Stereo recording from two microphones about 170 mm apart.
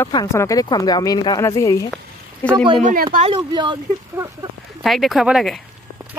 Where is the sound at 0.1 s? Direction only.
20° left (ahead or behind).